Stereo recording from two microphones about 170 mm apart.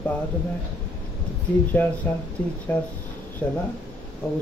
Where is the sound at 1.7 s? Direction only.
5° left (ahead or behind).